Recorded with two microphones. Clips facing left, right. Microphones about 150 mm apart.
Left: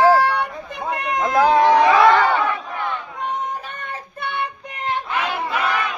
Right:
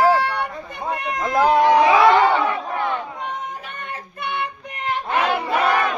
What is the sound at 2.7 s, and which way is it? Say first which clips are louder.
Battle cry: right 3 dB; 40° right (ahead or behind).